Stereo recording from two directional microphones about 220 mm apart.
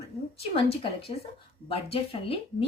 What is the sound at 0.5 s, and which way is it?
Speech, 25° left (ahead or behind).